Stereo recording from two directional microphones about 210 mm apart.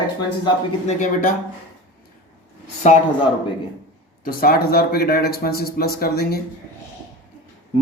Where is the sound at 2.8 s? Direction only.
35° left (ahead or behind).